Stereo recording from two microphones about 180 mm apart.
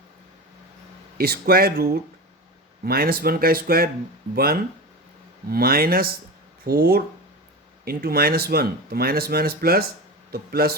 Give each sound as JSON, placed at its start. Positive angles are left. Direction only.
{"t": 1.2, "sound": "speech", "side_deg": -60}